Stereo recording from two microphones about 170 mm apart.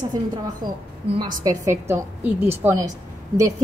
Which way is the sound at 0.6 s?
25° right (ahead or behind).